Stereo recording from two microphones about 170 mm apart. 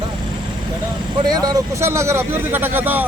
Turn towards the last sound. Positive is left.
turn(degrees=-10)  # may be behind; listen again after turning